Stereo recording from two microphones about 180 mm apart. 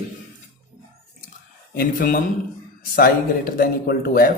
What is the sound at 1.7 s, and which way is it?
Speech, 55° left (ahead or behind).